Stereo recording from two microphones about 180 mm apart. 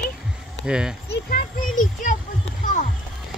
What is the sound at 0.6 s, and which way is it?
Speech, 5° right (ahead or behind).